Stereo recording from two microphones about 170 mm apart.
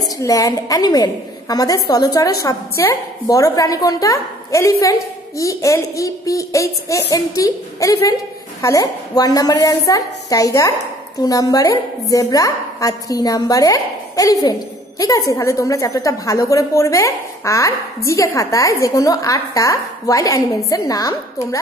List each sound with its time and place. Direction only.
0.2 s a woman's voice: 20° left (ahead or behind)